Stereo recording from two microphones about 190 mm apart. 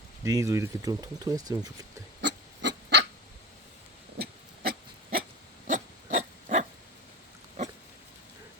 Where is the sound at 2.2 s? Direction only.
70° right (ahead or behind).